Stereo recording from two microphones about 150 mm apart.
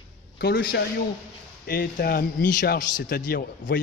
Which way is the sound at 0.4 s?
90° left.